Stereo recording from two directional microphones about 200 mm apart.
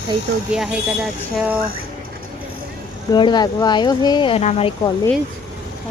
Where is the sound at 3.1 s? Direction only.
20° left (ahead or behind).